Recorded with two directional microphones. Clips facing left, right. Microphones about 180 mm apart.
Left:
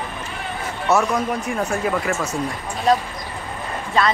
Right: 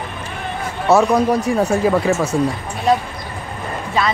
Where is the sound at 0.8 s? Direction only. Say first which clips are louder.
Right 6 dB; 35° right (ahead or behind).